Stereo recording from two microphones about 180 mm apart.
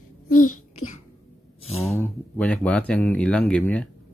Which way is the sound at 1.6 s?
35° left (ahead or behind).